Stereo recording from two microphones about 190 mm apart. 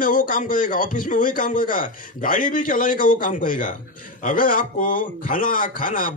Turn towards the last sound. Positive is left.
turn(degrees=45)  # may be behind; listen again after turning